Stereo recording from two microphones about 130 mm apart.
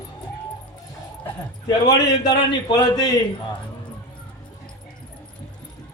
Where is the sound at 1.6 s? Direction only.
30° left (ahead or behind).